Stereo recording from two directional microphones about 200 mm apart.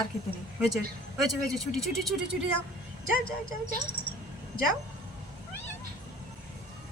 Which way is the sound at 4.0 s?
10° left (ahead or behind).